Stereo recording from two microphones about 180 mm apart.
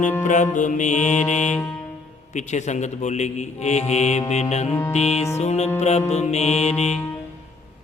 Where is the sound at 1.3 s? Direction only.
40° left (ahead or behind).